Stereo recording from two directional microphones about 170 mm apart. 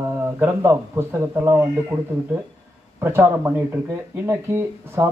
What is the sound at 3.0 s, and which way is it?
A man's voice, 15° right (ahead or behind).